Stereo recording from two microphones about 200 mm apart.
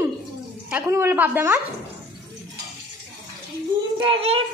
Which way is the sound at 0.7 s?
10° right (ahead or behind).